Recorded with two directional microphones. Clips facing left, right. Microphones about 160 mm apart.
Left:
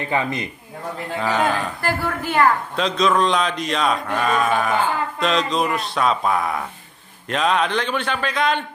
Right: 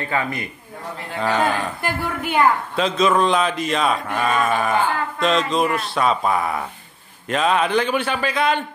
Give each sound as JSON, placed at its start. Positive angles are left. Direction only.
{"t": 0.0, "sound": "speech", "side_deg": 20}
{"t": 1.2, "sound": "a man's voice", "side_deg": 0}